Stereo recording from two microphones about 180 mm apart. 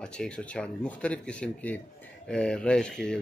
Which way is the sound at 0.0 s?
5° left (ahead or behind).